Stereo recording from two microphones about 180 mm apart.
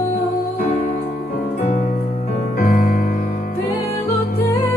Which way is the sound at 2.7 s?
45° left (ahead or behind).